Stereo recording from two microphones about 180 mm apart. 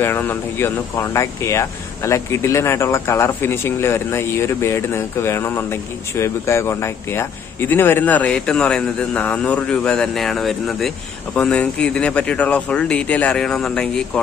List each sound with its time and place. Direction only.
0.0 s speech: 10° left (ahead or behind)